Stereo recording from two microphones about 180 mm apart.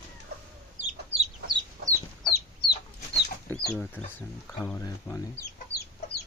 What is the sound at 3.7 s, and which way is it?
Speech, 10° left (ahead or behind).